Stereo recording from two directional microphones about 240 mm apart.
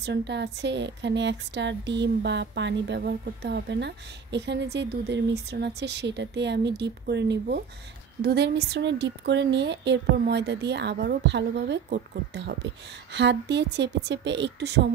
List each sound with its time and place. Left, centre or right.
0.0 s speech: right